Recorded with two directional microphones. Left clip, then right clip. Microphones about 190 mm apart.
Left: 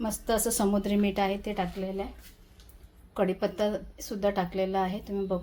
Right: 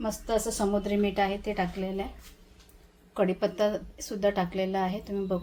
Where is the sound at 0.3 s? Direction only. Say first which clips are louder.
Left 1 dB; 35° left (ahead or behind).